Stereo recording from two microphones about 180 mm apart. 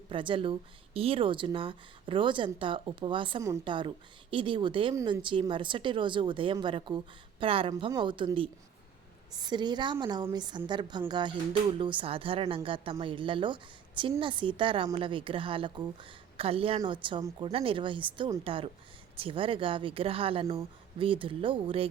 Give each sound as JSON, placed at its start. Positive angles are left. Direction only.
{"t": 0.1, "sound": "a woman's voice", "side_deg": -30}